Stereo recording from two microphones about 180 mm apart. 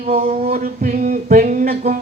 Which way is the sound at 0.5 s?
50° right (ahead or behind).